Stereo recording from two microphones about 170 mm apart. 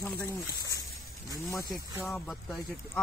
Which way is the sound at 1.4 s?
20° left (ahead or behind).